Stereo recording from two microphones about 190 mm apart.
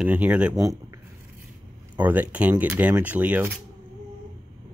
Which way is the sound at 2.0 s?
10° right (ahead or behind).